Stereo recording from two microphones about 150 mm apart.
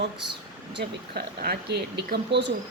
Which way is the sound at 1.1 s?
90° right.